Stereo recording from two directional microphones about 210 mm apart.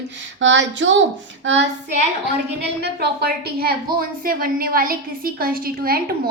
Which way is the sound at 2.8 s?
50° right (ahead or behind).